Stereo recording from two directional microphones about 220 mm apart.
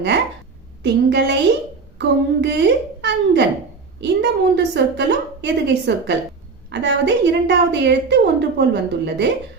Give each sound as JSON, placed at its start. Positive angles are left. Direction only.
{"t": 0.8, "sound": "a woman's voice", "side_deg": -50}